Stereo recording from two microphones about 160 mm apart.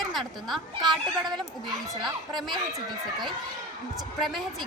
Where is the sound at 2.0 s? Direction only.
Centre (ahead or behind).